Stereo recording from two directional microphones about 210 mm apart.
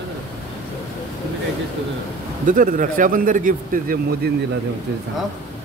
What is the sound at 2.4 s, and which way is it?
A man's voice, 40° right (ahead or behind).